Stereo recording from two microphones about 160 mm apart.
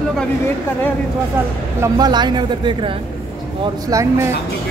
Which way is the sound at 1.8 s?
25° right (ahead or behind).